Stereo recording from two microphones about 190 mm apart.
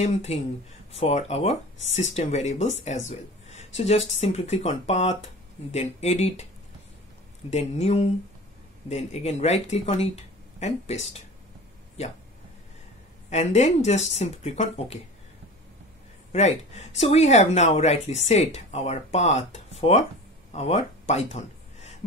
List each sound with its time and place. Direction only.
0.0 s speech: 35° left (ahead or behind)
7.5 s speech: 35° left (ahead or behind)
13.3 s speech: 35° left (ahead or behind)
16.3 s speech: 35° left (ahead or behind)
21.1 s a sound: 35° left (ahead or behind)